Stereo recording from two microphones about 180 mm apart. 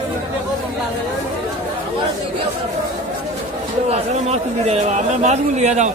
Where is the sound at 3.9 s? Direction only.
35° right (ahead or behind).